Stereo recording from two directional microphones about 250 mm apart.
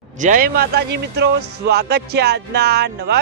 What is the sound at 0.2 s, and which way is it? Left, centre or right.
Speech, right.